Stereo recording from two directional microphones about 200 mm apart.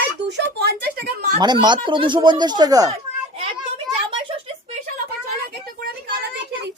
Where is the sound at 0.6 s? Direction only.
50° right (ahead or behind).